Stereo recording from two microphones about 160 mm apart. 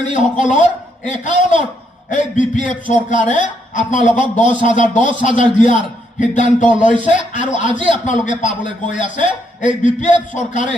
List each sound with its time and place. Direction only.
0.1 s speech: 50° left (ahead or behind)